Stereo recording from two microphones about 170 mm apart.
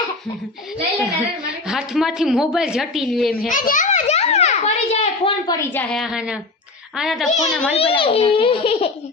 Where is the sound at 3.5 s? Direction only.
50° left (ahead or behind).